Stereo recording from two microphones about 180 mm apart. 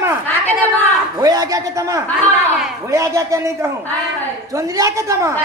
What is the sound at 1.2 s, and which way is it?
A man's voice, 20° right (ahead or behind).